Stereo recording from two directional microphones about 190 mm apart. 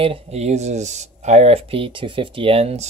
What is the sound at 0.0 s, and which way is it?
Speech, 30° right (ahead or behind).